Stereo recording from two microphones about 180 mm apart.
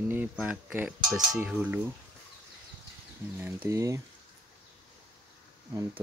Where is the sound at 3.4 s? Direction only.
15° right (ahead or behind).